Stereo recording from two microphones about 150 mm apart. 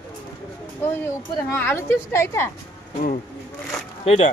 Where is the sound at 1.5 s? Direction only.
15° left (ahead or behind).